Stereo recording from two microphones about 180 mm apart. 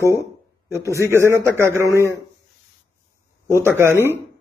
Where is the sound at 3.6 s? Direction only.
15° right (ahead or behind).